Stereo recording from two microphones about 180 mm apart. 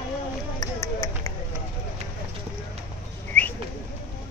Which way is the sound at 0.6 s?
20° left (ahead or behind).